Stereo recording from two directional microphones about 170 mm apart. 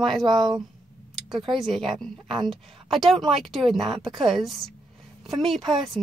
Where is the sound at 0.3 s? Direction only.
25° right (ahead or behind).